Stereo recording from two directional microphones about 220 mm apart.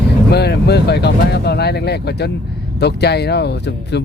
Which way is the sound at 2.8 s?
50° left (ahead or behind).